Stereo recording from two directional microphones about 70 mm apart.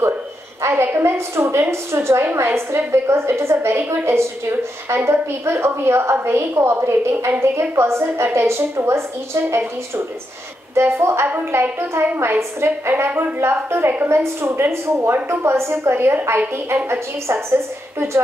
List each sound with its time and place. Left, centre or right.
0.6 s a woman's voice: right